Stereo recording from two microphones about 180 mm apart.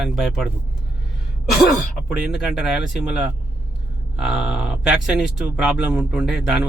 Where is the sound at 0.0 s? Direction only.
Centre (ahead or behind).